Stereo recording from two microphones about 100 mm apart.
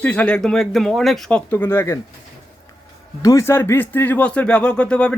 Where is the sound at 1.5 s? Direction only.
20° left (ahead or behind).